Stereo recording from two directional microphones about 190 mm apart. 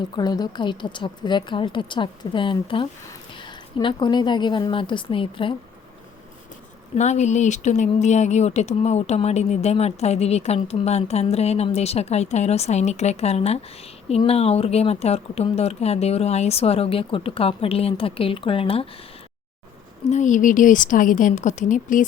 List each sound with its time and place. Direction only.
0.2 s speech: 20° left (ahead or behind)
6.9 s speech: 35° left (ahead or behind)
20.1 s a woman's voice: 40° left (ahead or behind)